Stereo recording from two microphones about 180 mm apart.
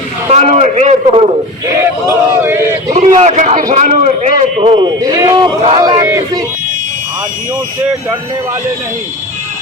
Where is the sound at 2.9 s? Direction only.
40° right (ahead or behind).